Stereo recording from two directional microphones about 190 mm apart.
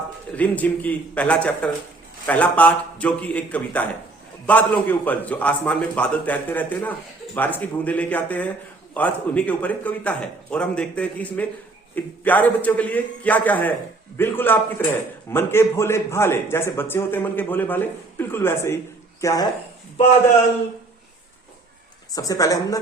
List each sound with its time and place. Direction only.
0.3 s a man's voice: 10° left (ahead or behind)
22.1 s a man's voice: 15° left (ahead or behind)